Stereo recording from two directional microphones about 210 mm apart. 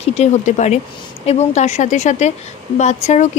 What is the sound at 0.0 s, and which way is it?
Speech, 30° left (ahead or behind).